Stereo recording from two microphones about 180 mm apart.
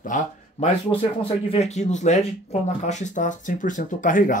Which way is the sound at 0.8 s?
35° left (ahead or behind).